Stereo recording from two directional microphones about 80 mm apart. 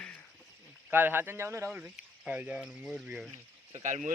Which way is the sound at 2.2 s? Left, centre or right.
Centre.